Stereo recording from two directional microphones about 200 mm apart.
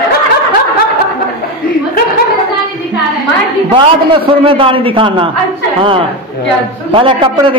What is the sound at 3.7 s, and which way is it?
A man's voice, 25° right (ahead or behind).